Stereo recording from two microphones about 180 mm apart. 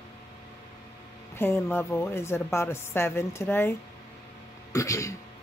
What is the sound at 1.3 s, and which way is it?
A woman's voice, 15° left (ahead or behind).